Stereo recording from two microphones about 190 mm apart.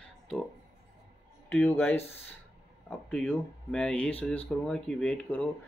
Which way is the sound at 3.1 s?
5° left (ahead or behind).